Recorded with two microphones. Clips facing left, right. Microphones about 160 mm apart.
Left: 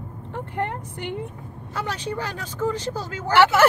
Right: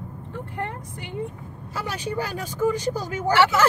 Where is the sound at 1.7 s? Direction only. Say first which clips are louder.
Even; 10° right (ahead or behind).